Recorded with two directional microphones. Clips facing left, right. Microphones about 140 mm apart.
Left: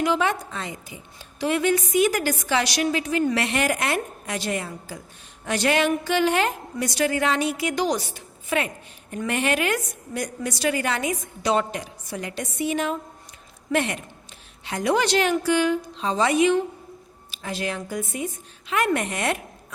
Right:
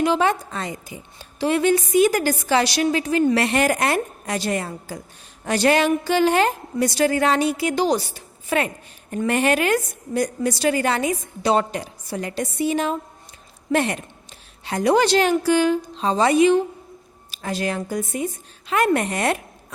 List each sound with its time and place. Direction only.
0.0 s a woman's voice: 35° right (ahead or behind)